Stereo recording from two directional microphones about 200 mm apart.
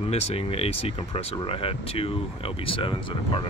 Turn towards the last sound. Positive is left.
turn(degrees=25)  # may be behind; listen again after turning